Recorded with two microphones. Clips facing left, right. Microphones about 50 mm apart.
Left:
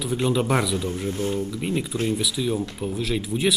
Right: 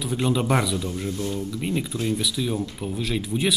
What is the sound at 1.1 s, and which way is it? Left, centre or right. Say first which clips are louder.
Speech: left 3 dB; left.